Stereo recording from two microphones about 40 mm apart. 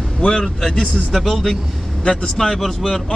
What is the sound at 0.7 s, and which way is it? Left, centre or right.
Speech, left.